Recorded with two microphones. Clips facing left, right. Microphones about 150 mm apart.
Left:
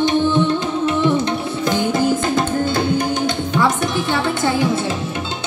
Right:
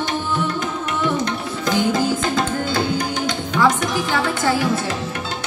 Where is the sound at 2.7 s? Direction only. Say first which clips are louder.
Left 3 dB; 25° left (ahead or behind).